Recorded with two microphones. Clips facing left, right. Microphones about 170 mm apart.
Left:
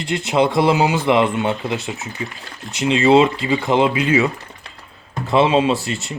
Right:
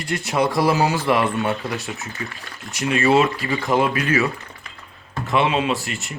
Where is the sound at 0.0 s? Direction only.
20° left (ahead or behind).